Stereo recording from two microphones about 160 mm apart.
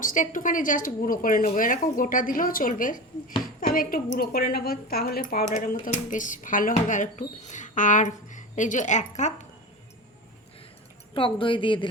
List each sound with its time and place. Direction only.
0.0 s a woman's voice: 55° left (ahead or behind)
5.5 s speech: 55° left (ahead or behind)
11.1 s speech: 35° left (ahead or behind)